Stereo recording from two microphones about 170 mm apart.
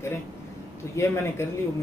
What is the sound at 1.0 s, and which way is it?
Speech, 15° left (ahead or behind).